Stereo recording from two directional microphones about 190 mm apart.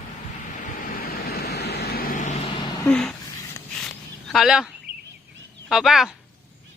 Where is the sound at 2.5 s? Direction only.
25° left (ahead or behind).